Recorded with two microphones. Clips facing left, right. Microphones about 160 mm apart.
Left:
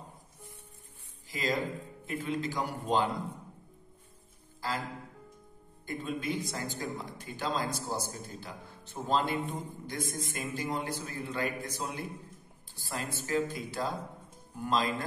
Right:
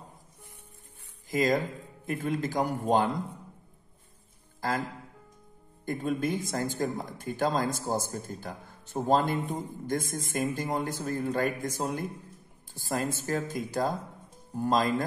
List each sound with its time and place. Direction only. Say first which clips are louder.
1.3 s speech: right 6 dB; 45° right (ahead or behind)
4.6 s speech: right 5 dB; 50° right (ahead or behind)
5.9 s speech: right 5 dB; 45° right (ahead or behind)